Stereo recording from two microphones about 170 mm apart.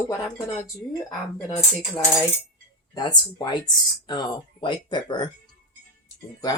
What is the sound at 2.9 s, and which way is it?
Speech, 25° left (ahead or behind).